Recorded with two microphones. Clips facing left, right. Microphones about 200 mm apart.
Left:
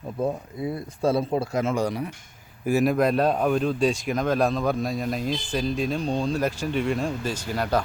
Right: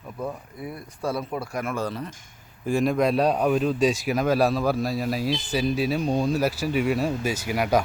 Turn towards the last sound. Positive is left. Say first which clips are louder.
# right 2 dB
turn(degrees=-10)  # may be behind; listen again after turning